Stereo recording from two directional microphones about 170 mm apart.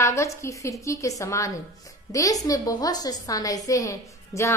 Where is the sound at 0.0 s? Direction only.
20° left (ahead or behind).